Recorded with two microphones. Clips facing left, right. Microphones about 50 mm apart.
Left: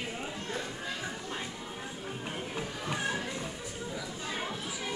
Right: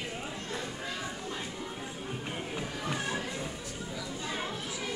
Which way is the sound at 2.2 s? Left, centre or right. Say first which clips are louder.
Left 1 dB; centre.